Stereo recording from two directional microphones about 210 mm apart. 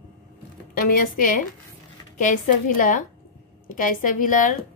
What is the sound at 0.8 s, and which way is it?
A woman's voice, 40° left (ahead or behind).